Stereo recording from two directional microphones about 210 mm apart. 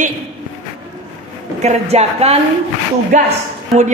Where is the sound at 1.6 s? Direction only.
30° right (ahead or behind).